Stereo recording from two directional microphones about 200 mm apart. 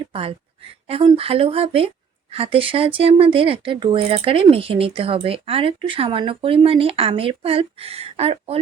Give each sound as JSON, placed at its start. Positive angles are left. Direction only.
{"t": 0.1, "sound": "speech", "side_deg": -30}